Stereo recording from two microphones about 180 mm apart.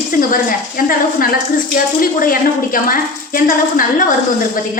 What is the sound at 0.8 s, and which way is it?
A woman's voice, 55° left (ahead or behind).